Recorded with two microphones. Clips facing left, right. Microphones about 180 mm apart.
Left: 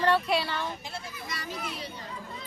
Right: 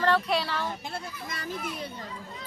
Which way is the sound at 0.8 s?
55° right (ahead or behind).